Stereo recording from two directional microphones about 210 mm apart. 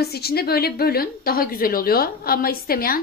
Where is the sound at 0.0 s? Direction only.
50° left (ahead or behind).